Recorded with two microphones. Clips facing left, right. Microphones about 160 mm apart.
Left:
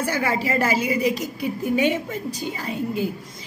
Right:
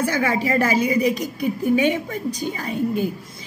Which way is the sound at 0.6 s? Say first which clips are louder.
Right 3 dB; 10° left (ahead or behind).